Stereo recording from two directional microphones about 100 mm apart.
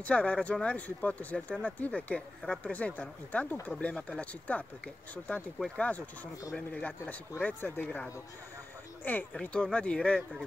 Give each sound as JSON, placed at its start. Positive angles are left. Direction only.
{"t": 0.0, "sound": "speech", "side_deg": 10}
{"t": 9.3, "sound": "speech", "side_deg": 10}